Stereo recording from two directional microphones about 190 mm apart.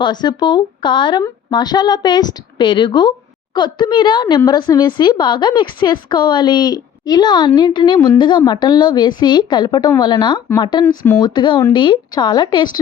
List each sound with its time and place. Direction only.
0.0 s a woman's voice: 20° left (ahead or behind)
10.8 s speech: 10° left (ahead or behind)
11.2 s a woman's voice: 25° left (ahead or behind)